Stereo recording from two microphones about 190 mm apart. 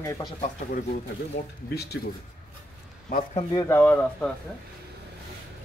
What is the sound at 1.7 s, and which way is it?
Speech, 60° left (ahead or behind).